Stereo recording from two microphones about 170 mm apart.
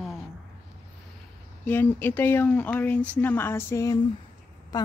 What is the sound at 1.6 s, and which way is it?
A woman's voice, 10° left (ahead or behind).